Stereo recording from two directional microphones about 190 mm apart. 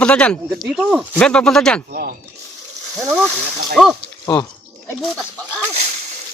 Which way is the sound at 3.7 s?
Centre (ahead or behind).